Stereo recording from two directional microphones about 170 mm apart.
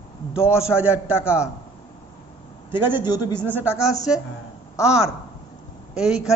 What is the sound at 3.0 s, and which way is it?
Speech, 25° left (ahead or behind).